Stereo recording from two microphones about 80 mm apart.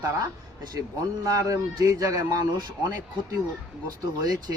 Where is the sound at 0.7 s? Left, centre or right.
Right.